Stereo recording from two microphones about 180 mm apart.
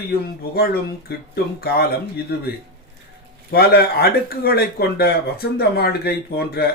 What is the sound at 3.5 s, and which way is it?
Speech, 60° left (ahead or behind).